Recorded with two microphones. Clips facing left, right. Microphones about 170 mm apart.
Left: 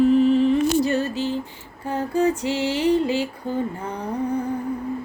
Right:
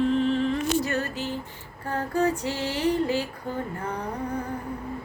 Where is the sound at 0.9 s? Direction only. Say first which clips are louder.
Left 6 dB; 25° left (ahead or behind).